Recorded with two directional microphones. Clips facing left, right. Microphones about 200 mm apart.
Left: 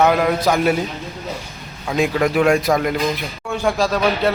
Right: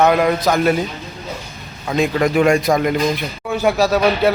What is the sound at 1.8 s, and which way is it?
Speech, 5° left (ahead or behind).